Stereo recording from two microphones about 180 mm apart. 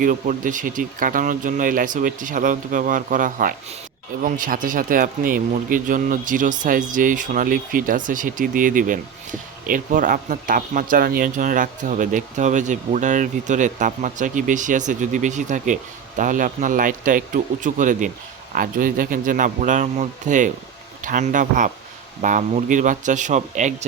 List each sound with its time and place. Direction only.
0.0 s speech: 45° right (ahead or behind)